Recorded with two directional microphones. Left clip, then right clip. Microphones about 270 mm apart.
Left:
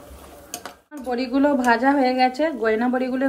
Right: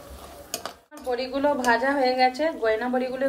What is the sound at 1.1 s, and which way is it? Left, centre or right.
A woman's voice, left.